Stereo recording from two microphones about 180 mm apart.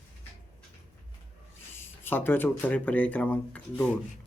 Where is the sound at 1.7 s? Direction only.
10° left (ahead or behind).